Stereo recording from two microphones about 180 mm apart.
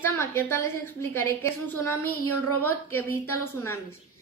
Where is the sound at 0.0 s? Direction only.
10° left (ahead or behind).